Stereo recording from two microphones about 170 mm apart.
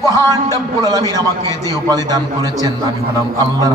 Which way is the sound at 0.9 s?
20° right (ahead or behind).